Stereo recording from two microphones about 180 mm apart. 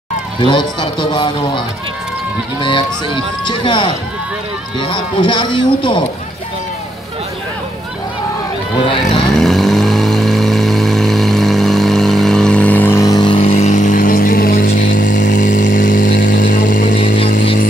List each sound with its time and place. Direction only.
0.4 s speech: 25° left (ahead or behind)
3.4 s speech: 25° left (ahead or behind)
9.1 s vehicle: centre (ahead or behind); by 13.4 s 25° left (ahead or behind)
13.4 s vehicle: 40° left (ahead or behind)